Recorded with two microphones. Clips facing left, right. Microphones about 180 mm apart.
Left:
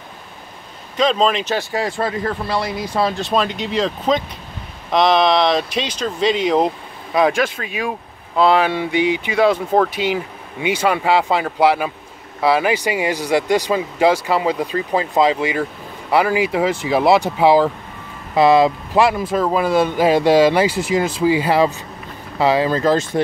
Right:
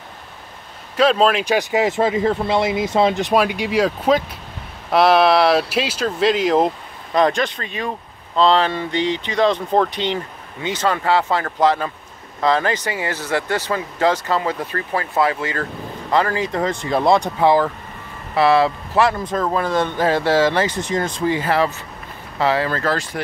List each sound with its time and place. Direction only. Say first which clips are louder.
0.9 s speech: right 1 dB; 5° right (ahead or behind); by 23.2 s 20° left (ahead or behind)